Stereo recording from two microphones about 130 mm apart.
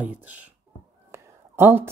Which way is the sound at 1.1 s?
15° right (ahead or behind).